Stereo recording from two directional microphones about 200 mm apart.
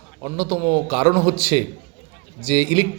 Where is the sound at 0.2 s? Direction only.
15° right (ahead or behind).